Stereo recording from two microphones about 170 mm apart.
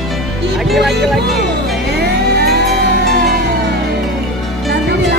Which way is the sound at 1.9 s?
75° right (ahead or behind).